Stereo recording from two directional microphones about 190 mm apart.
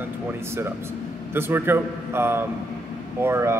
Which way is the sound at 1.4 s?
10° right (ahead or behind).